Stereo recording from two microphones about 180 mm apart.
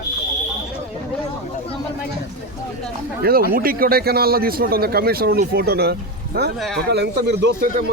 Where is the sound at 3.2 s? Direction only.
55° right (ahead or behind).